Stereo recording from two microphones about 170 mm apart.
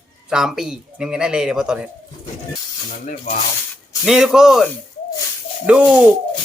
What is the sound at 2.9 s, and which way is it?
Speech, 50° left (ahead or behind).